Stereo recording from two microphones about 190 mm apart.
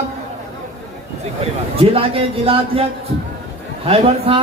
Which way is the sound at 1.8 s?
30° right (ahead or behind).